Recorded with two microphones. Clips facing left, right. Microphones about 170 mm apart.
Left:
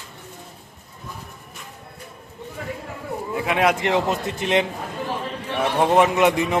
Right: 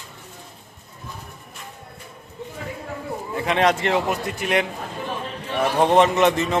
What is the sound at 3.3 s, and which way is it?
Speech, 5° left (ahead or behind).